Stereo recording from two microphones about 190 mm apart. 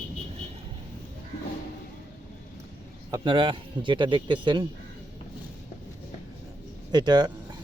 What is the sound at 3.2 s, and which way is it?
Speech, 25° right (ahead or behind).